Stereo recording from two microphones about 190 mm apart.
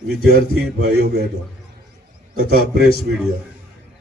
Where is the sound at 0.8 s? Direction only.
55° right (ahead or behind).